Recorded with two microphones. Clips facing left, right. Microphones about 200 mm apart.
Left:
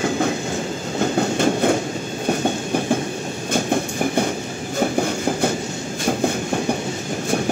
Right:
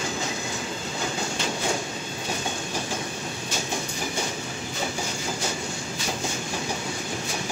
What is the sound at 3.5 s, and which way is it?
Train, 55° left (ahead or behind).